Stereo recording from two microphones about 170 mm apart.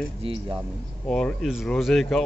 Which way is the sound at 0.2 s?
35° right (ahead or behind).